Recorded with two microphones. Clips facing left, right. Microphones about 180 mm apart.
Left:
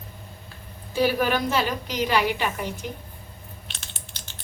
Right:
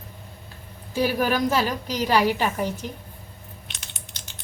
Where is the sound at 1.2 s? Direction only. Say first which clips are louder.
Right 1 dB; 40° right (ahead or behind).